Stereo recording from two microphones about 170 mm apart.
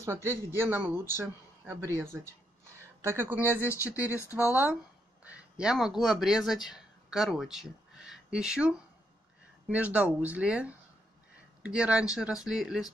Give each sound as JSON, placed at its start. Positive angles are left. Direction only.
{"t": 0.0, "sound": "speech", "side_deg": -15}
{"t": 3.6, "sound": "speech", "side_deg": 15}
{"t": 5.2, "sound": "speech", "side_deg": -5}